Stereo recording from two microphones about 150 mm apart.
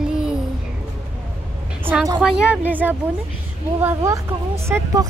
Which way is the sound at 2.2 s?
5° right (ahead or behind).